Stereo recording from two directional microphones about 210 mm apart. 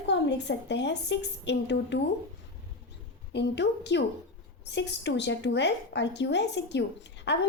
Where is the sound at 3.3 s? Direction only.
55° left (ahead or behind).